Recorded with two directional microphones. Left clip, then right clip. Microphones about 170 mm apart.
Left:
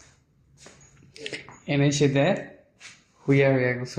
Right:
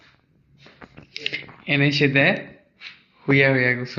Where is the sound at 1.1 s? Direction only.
30° left (ahead or behind).